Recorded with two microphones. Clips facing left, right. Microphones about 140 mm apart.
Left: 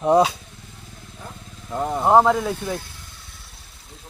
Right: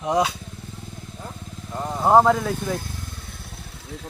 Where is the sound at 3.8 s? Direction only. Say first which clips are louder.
Right 9 dB; 85° right.